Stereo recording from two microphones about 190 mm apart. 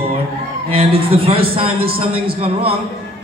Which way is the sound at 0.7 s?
30° right (ahead or behind).